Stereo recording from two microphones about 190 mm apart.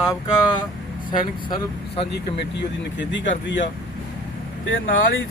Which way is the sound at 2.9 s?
70° left (ahead or behind).